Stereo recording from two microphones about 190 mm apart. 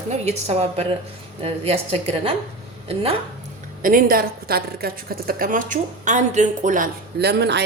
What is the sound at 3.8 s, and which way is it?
A woman's voice, 50° right (ahead or behind).